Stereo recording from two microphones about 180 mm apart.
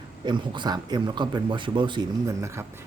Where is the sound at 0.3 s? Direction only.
25° right (ahead or behind).